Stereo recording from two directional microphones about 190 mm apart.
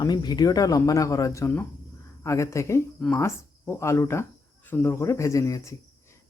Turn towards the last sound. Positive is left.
turn(degrees=15)  # may be behind; listen again after turning